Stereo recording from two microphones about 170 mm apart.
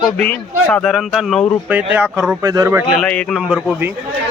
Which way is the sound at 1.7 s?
10° right (ahead or behind).